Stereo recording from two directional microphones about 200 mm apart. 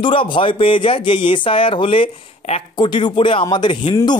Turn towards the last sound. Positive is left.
turn(degrees=25)  # may be behind; listen again after turning